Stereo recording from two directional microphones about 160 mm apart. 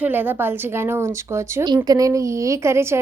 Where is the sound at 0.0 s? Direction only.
10° right (ahead or behind).